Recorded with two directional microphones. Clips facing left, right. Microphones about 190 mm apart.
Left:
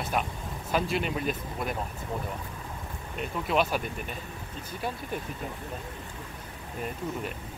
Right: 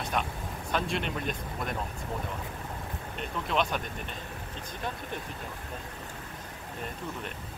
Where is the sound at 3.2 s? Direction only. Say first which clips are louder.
Left 3 dB; 5° left (ahead or behind).